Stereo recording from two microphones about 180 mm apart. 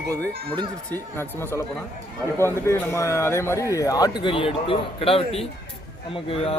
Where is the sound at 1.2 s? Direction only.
15° left (ahead or behind).